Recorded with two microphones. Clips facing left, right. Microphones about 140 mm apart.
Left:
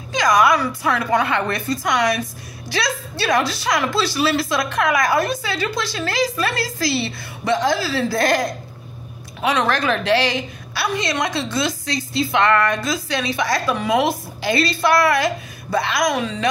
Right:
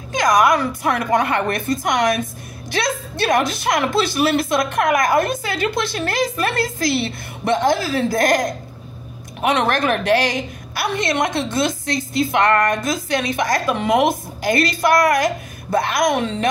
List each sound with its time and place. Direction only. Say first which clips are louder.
0.1 s a woman's voice: right 1 dB; 50° right (ahead or behind)
9.7 s a woman's voice: right 1 dB; 50° right (ahead or behind)
16.2 s a woman's voice: right 2 dB; 60° right (ahead or behind)